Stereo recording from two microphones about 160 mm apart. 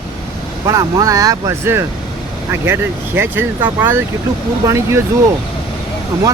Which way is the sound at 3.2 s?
15° right (ahead or behind).